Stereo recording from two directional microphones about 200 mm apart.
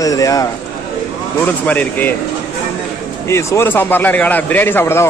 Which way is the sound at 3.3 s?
15° left (ahead or behind).